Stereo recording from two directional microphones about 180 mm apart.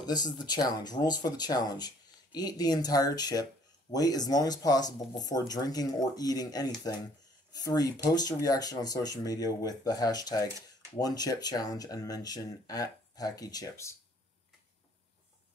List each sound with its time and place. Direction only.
0.0 s speech: 20° left (ahead or behind)